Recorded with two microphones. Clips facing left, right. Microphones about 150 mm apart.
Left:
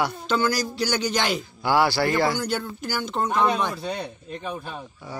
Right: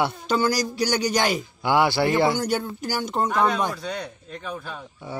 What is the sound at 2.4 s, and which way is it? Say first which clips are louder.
Speech: right 2 dB; 45° right (ahead or behind).